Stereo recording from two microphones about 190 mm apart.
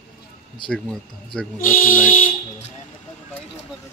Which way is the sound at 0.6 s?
5° left (ahead or behind).